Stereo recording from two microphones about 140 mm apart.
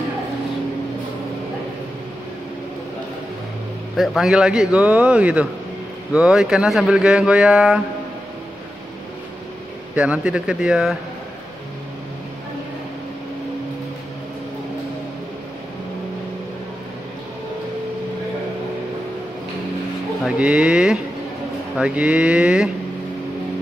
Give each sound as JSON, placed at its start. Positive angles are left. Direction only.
{"t": 3.9, "sound": "a man's voice", "side_deg": 0}
{"t": 9.9, "sound": "a man's voice", "side_deg": -10}
{"t": 20.2, "sound": "a man's voice", "side_deg": -5}